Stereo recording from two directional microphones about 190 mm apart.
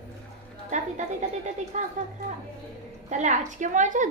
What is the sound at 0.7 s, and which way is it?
A woman's voice, 40° right (ahead or behind).